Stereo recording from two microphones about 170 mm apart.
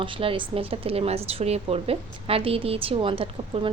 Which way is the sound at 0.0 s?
30° right (ahead or behind).